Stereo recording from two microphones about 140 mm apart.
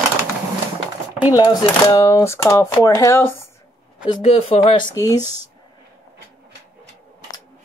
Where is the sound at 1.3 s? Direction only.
30° left (ahead or behind).